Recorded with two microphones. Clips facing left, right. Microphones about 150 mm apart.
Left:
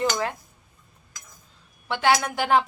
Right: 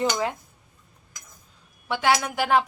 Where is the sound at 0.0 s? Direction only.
15° right (ahead or behind).